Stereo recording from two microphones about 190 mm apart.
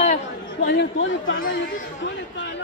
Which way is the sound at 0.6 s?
65° left (ahead or behind).